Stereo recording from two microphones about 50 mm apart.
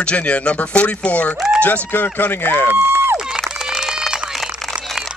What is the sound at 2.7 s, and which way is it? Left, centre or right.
Speech, right.